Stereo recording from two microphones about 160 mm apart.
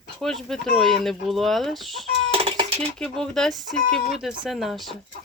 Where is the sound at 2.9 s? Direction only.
5° left (ahead or behind).